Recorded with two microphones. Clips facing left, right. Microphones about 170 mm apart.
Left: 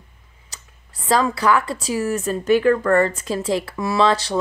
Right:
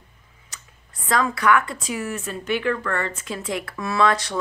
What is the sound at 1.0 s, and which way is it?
Speech, 30° left (ahead or behind).